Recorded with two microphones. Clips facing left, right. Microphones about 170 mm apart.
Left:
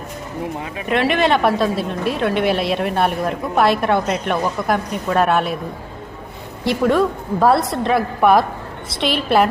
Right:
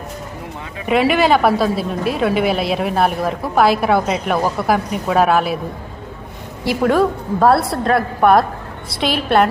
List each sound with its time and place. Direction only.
0.9 s a woman's voice: 5° right (ahead or behind)
6.7 s a woman's voice: centre (ahead or behind)